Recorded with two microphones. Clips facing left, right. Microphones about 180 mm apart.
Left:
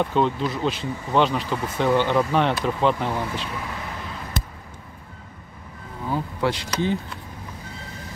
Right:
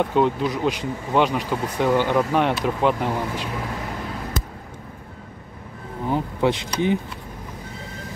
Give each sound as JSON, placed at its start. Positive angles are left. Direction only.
{"t": 0.0, "sound": "speech", "side_deg": -10}
{"t": 6.0, "sound": "speech", "side_deg": -20}